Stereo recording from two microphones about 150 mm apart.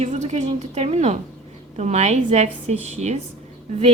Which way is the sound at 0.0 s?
50° right (ahead or behind).